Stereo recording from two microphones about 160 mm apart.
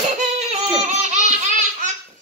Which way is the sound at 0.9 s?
45° right (ahead or behind).